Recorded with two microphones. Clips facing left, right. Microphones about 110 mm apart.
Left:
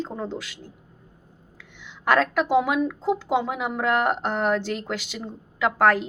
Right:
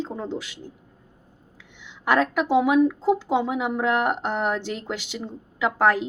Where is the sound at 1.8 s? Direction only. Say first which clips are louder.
Even; 15° right (ahead or behind).